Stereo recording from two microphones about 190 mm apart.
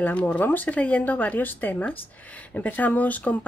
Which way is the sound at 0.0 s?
10° left (ahead or behind).